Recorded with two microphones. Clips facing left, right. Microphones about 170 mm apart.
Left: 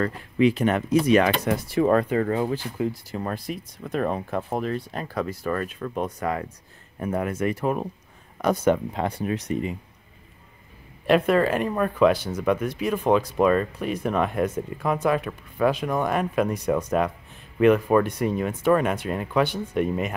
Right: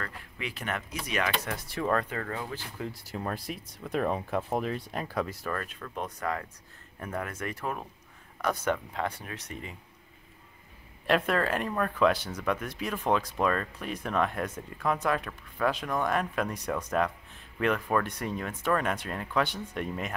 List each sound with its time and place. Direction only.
0.0 s speech: 25° left (ahead or behind)
1.4 s speech: 15° left (ahead or behind)
2.5 s speech: 15° left (ahead or behind)
3.1 s speech: centre (ahead or behind); by 9.8 s 20° left (ahead or behind)
11.1 s speech: 5° left (ahead or behind)